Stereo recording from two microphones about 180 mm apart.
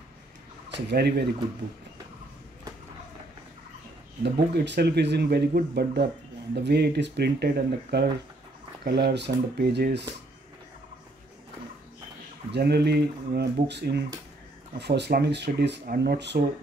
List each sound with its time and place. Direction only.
0.7 s speech: 70° right (ahead or behind)
4.2 s speech: 65° right (ahead or behind)
12.5 s speech: 65° right (ahead or behind)